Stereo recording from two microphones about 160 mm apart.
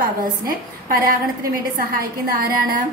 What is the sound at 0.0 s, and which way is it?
A woman's voice, 65° right (ahead or behind).